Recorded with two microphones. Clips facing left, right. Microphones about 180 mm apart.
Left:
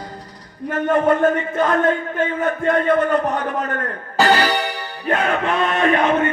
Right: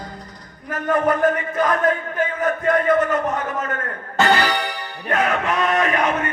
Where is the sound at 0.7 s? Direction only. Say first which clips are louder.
Left 3 dB; 25° left (ahead or behind).